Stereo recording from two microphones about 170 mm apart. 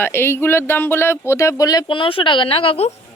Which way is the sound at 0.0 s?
15° left (ahead or behind).